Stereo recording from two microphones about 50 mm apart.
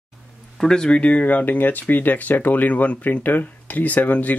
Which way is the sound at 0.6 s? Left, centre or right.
Centre.